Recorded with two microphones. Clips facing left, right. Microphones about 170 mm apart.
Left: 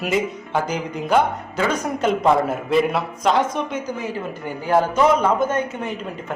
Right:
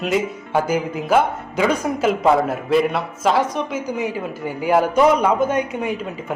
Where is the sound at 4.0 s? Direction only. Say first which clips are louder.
Right 3 dB; 15° right (ahead or behind).